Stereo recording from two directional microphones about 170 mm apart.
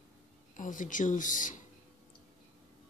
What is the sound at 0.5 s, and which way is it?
Speech, 50° left (ahead or behind).